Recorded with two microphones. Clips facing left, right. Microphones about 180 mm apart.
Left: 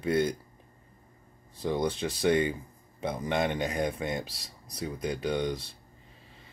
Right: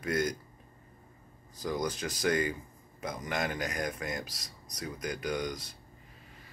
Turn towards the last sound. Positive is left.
turn(degrees=30)  # may be behind; listen again after turning